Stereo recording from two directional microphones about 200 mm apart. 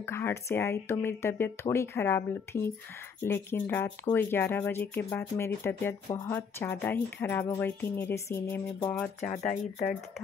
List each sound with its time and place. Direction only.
0.0 s speech: 10° left (ahead or behind)
9.2 s speech: 35° left (ahead or behind)